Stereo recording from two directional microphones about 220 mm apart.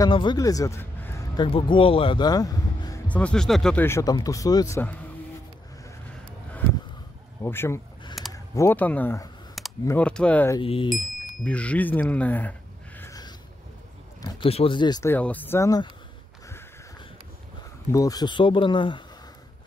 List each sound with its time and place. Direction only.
0.0 s speech: 20° left (ahead or behind)
7.4 s speech: 10° left (ahead or behind)
10.6 s speech: 25° left (ahead or behind)
11.4 s speech: 5° left (ahead or behind)
14.2 s speech: 25° left (ahead or behind)
17.9 s speech: 15° left (ahead or behind)